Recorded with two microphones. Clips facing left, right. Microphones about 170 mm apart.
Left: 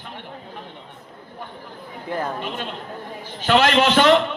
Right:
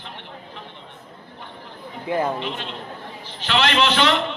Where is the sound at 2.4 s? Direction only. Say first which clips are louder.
Even; 45° left (ahead or behind).